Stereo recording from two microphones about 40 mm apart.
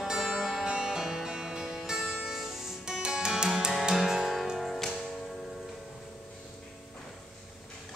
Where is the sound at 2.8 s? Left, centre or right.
Centre.